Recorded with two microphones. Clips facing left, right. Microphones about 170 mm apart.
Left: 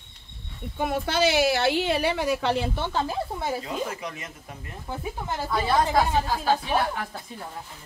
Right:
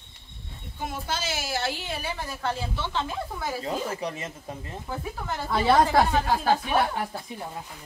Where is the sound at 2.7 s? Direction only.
45° left (ahead or behind).